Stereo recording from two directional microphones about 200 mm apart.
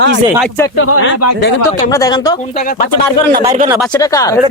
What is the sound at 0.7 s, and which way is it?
Speech, 80° left.